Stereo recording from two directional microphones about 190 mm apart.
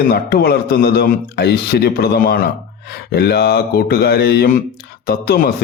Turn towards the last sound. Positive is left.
turn(degrees=50)  # may be behind; listen again after turning